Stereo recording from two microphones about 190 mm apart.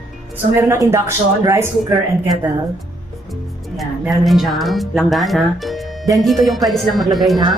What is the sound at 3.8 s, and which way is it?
Speech, centre (ahead or behind).